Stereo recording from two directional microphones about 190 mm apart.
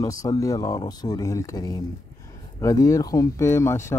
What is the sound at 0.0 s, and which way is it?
Speech, 20° left (ahead or behind).